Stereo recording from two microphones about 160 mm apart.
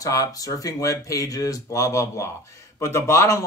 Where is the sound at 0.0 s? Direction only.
20° left (ahead or behind).